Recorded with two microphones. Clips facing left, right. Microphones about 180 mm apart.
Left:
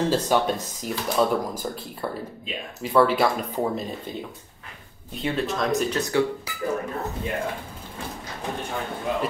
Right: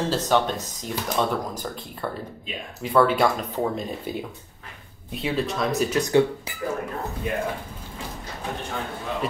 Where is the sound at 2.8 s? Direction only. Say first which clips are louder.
Even; centre (ahead or behind).